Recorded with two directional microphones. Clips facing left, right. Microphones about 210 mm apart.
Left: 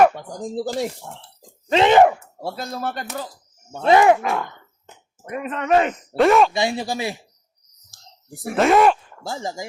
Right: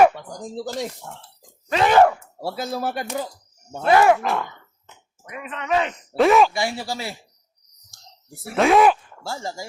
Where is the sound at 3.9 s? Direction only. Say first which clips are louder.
Left 2 dB; 20° left (ahead or behind).